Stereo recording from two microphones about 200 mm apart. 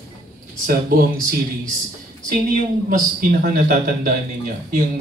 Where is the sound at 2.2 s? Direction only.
40° right (ahead or behind).